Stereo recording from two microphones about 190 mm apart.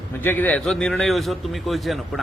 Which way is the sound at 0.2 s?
10° left (ahead or behind).